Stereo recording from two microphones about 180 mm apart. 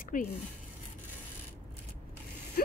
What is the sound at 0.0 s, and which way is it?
Zipper, 50° left (ahead or behind).